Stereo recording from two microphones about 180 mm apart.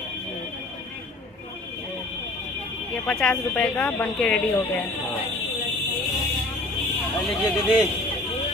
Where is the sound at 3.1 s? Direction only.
5° left (ahead or behind).